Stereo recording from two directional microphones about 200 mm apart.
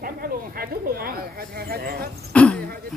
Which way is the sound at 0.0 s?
45° right (ahead or behind).